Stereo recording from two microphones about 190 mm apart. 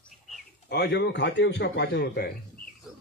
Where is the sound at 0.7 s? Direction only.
60° left (ahead or behind).